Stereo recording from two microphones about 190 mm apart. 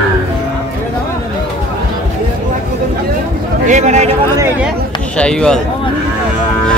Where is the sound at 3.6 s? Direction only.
40° right (ahead or behind).